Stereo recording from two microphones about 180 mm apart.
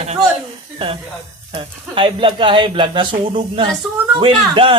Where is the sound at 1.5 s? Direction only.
30° right (ahead or behind).